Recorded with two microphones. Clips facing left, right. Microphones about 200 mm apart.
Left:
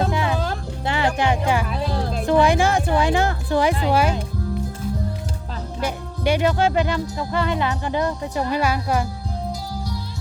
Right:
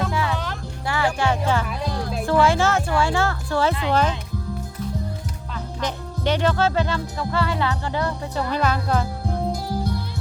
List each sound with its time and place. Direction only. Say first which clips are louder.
0.0 s music: left 2 dB; 20° left (ahead or behind)
0.3 s music: left 4 dB; 30° left (ahead or behind)
0.9 s music: left 1 dB; 20° left (ahead or behind)
1.9 s music: left 2 dB; 30° left (ahead or behind)
2.2 s speech: left 1 dB; 20° left (ahead or behind)
5.8 s speech: left 2 dB; 10° left (ahead or behind)